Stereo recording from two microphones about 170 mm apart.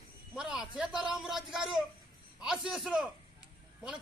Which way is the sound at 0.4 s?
5° right (ahead or behind).